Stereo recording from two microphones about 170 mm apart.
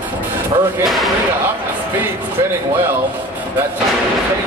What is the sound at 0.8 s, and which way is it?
Speech, centre (ahead or behind).